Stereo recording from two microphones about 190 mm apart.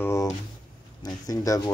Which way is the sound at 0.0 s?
15° left (ahead or behind).